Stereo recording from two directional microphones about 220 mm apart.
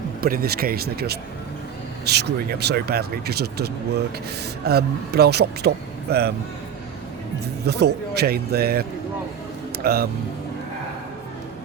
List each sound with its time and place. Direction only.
0.2 s speech: 40° right (ahead or behind)
7.4 s speech: 45° right (ahead or behind)